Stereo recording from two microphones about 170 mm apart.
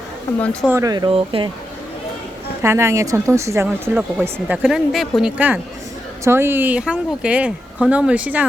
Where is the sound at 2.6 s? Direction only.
15° right (ahead or behind).